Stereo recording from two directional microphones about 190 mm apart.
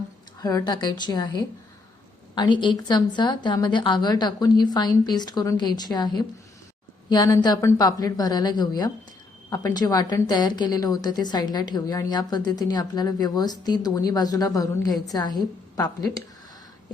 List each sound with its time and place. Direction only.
0.3 s a woman's voice: 20° left (ahead or behind)